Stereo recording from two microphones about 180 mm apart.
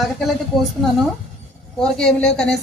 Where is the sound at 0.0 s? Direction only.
Centre (ahead or behind).